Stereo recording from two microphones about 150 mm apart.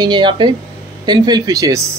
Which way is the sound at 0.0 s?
30° right (ahead or behind).